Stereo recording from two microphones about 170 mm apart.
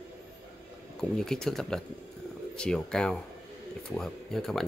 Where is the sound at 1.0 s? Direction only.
5° left (ahead or behind).